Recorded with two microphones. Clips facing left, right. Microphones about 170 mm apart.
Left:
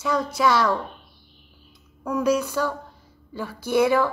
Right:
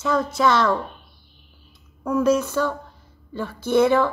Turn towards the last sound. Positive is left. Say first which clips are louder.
# right 2 dB
turn(degrees=10)  # may be behind; listen again after turning